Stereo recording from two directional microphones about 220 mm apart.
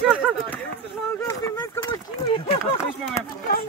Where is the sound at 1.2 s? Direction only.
15° left (ahead or behind).